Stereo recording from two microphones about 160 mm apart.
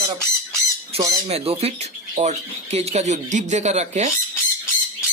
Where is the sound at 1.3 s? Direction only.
40° right (ahead or behind).